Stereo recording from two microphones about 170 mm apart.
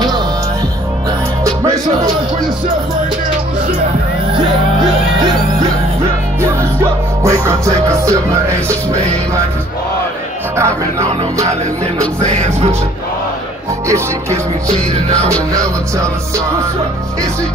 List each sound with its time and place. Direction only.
1.4 s music: 20° right (ahead or behind)
6.4 s music: 15° right (ahead or behind)
10.6 s music: 15° right (ahead or behind)
12.2 s music: 45° right (ahead or behind)
15.5 s music: 20° right (ahead or behind)